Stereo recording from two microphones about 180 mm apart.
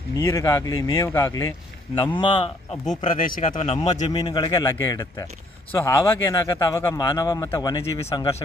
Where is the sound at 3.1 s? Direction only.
50° left (ahead or behind).